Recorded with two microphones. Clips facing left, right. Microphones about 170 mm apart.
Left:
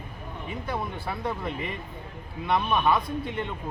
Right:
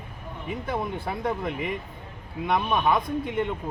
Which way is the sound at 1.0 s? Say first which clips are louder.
Right 3 dB; 15° right (ahead or behind).